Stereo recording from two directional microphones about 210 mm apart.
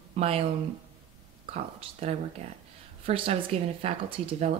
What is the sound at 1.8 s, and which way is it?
Speech, 25° right (ahead or behind).